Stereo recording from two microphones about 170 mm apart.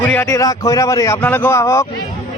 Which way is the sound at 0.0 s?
10° left (ahead or behind).